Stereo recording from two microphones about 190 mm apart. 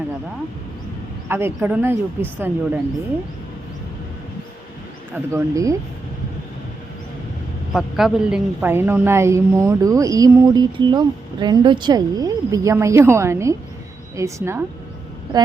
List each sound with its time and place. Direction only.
1.3 s a woman's voice: 10° right (ahead or behind)
5.1 s a woman's voice: 15° right (ahead or behind)
7.7 s a woman's voice: centre (ahead or behind)